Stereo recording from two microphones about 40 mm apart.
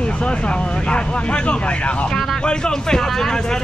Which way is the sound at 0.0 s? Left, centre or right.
Left.